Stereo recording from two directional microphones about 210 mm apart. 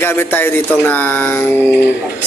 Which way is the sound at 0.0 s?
10° left (ahead or behind).